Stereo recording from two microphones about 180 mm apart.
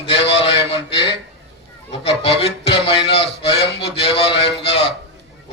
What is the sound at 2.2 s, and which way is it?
A man's voice, 30° left (ahead or behind).